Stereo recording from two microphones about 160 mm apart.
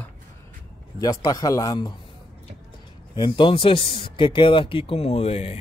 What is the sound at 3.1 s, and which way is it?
Speech, 30° left (ahead or behind).